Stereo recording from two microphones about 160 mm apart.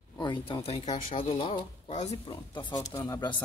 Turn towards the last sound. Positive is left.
turn(degrees=25)  # may be behind; listen again after turning